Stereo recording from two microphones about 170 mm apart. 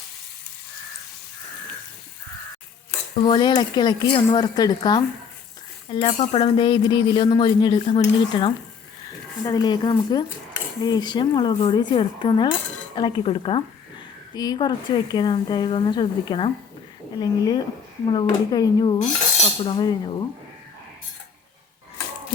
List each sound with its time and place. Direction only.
3.2 s speech: 25° left (ahead or behind)
13.0 s dishes: 30° left (ahead or behind)
14.3 s speech: 25° left (ahead or behind)
18.9 s cutlery: 45° left (ahead or behind)
19.6 s speech: 25° left (ahead or behind)